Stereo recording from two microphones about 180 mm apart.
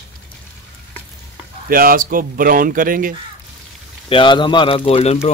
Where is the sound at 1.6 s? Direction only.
55° right (ahead or behind).